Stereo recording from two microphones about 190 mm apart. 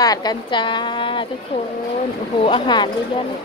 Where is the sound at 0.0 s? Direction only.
20° left (ahead or behind).